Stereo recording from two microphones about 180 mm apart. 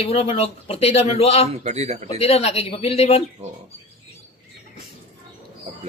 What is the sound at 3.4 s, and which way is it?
Speech, 35° right (ahead or behind).